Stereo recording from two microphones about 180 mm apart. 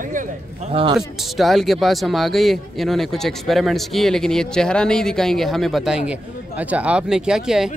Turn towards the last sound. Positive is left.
turn(degrees=-5)  # may be behind; listen again after turning